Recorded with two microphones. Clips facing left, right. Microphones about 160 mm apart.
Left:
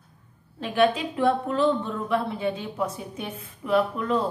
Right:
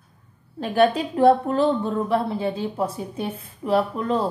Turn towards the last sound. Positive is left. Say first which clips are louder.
# right 2 dB
turn(degrees=-35)  # may be behind; listen again after turning